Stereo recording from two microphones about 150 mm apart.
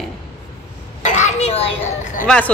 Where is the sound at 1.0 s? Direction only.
50° left (ahead or behind).